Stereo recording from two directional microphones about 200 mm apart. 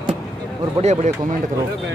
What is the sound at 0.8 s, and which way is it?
Speech, 35° right (ahead or behind).